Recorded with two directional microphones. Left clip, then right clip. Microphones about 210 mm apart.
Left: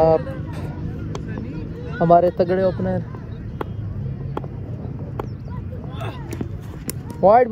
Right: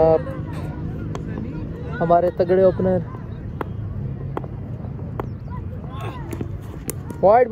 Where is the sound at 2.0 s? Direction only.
30° left (ahead or behind).